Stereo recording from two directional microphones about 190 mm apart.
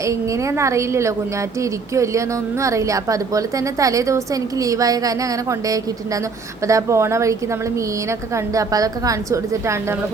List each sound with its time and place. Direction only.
0.0 s a woman's voice: 15° right (ahead or behind)